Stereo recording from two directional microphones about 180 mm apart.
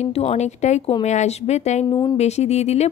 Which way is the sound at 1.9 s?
25° left (ahead or behind).